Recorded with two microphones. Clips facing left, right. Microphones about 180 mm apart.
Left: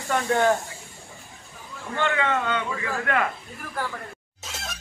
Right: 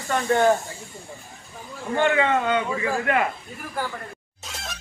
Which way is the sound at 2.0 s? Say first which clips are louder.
Right 3 dB; 15° right (ahead or behind).